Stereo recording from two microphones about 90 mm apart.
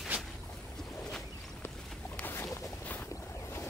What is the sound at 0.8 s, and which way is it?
Boat, 5° left (ahead or behind).